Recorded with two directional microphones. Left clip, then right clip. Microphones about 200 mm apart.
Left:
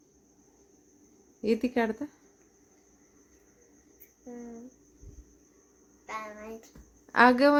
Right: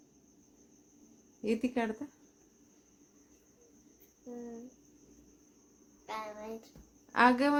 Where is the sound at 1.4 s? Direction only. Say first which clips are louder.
Left 6 dB; 30° left (ahead or behind).